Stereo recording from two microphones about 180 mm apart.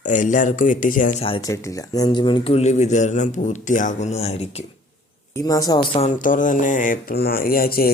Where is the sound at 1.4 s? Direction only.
20° left (ahead or behind); by 4.3 s 35° left (ahead or behind).